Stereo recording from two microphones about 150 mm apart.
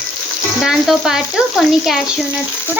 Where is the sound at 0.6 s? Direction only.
Centre (ahead or behind).